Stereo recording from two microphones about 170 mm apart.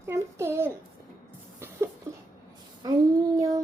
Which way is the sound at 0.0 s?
15° right (ahead or behind).